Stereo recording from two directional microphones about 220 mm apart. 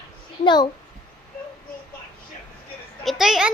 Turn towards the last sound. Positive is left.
turn(degrees=0)  # may be behind; listen again after turning